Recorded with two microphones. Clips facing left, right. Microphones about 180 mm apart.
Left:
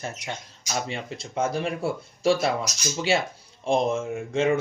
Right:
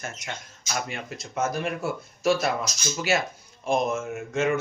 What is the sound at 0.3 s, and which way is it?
Speech, 25° left (ahead or behind).